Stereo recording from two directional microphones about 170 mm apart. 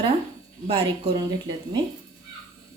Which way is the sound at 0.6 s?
35° right (ahead or behind).